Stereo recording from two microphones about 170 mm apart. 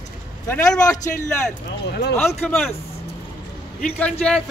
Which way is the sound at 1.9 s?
80° left.